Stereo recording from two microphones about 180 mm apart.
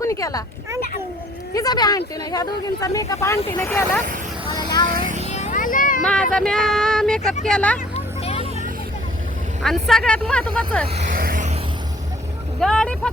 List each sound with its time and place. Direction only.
0.0 s speech: 20° left (ahead or behind)
1.5 s speech: 20° left (ahead or behind)
4.4 s a sound: 20° left (ahead or behind)
4.9 s music: 50° right (ahead or behind)
5.2 s children playing: 40° left (ahead or behind)
6.0 s speech: 5° left (ahead or behind)
7.9 s music: 35° left (ahead or behind)
9.6 s speech: centre (ahead or behind)
11.1 s music: 50° right (ahead or behind)
12.5 s speech: 5° left (ahead or behind)